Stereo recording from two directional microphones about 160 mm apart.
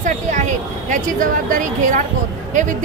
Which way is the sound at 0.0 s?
50° right (ahead or behind).